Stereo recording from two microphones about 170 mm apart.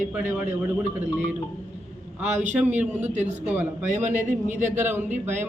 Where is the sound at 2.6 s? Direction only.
10° right (ahead or behind).